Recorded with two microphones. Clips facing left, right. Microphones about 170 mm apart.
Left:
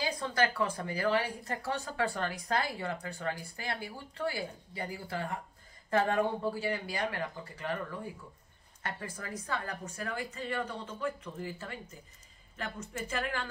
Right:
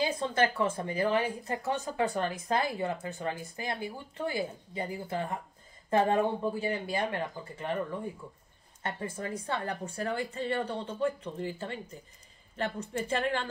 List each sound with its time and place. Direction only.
0.0 s speech: 25° right (ahead or behind)